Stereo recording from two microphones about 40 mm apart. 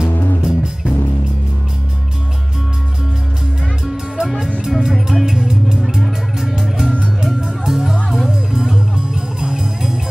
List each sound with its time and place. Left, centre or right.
0.4 s music: centre
3.8 s music: centre